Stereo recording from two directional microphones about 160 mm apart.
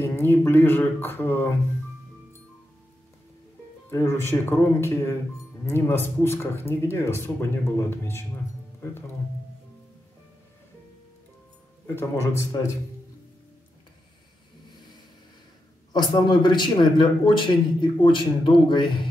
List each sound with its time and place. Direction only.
0.0 s speech: 15° left (ahead or behind)
3.9 s speech: 15° left (ahead or behind)
11.9 s speech: 15° left (ahead or behind)
15.9 s a man's voice: 30° left (ahead or behind)